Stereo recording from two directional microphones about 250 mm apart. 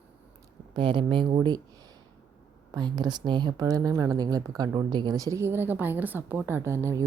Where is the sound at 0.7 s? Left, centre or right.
Centre.